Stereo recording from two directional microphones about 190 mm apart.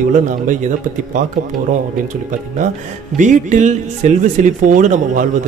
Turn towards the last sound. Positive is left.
turn(degrees=-40)  # may be behind; listen again after turning